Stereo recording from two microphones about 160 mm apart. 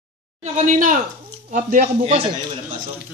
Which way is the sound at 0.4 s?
50° right (ahead or behind).